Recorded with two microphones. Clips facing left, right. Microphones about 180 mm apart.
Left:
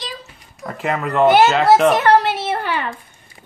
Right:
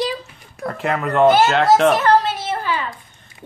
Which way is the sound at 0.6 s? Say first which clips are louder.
Right 1 dB; centre (ahead or behind).